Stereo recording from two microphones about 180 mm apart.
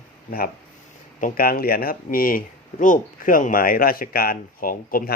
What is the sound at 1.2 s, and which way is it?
Speech, 55° left (ahead or behind).